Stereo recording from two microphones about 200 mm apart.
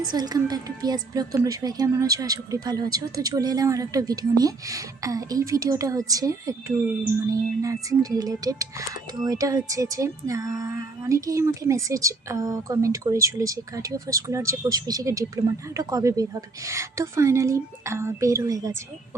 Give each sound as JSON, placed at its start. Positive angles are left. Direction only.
{"t": 0.1, "sound": "speech", "side_deg": -20}